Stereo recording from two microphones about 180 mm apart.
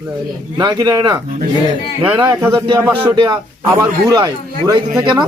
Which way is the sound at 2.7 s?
10° right (ahead or behind).